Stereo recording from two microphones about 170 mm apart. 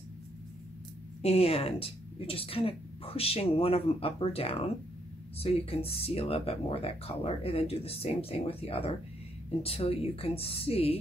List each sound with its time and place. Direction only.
1.2 s speech: 35° left (ahead or behind)